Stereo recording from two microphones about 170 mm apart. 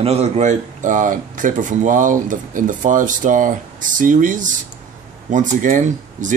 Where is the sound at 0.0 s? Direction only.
35° right (ahead or behind).